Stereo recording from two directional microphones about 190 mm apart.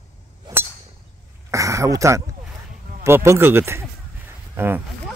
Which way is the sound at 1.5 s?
15° right (ahead or behind).